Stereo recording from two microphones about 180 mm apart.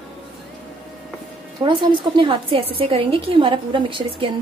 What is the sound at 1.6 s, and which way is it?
A woman's voice, 25° right (ahead or behind).